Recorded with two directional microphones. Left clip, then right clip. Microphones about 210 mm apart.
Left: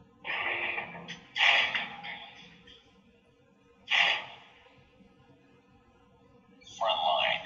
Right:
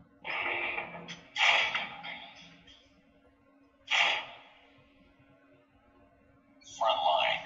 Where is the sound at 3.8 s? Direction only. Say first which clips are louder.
Left 2 dB; 10° right (ahead or behind).